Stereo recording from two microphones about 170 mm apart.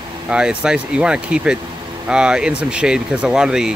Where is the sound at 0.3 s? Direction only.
5° right (ahead or behind).